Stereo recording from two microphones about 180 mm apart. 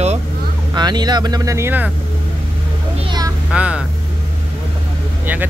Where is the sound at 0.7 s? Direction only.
25° right (ahead or behind).